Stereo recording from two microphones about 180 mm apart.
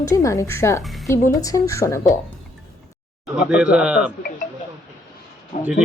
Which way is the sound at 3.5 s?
5° right (ahead or behind).